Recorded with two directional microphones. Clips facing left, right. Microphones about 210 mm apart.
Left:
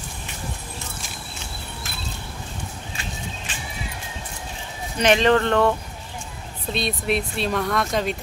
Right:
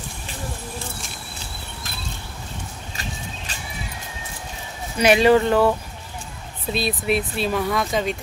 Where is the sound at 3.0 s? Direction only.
40° right (ahead or behind).